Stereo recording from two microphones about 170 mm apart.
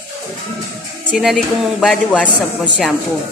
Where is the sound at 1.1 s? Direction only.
Centre (ahead or behind).